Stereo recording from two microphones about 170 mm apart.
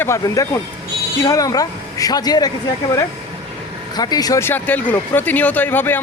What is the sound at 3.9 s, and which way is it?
Speech, 25° left (ahead or behind).